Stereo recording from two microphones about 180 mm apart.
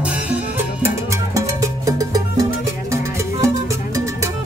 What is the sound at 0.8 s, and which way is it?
Music, 15° right (ahead or behind).